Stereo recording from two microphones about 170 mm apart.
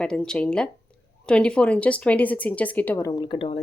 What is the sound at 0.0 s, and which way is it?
A woman's voice, 5° left (ahead or behind).